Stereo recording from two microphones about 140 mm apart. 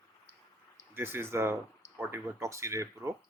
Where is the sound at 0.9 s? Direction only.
15° right (ahead or behind).